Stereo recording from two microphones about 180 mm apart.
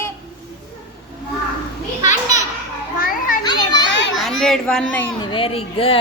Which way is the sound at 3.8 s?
80° left.